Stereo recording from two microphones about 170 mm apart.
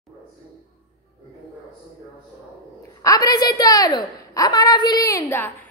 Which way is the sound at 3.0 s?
20° left (ahead or behind).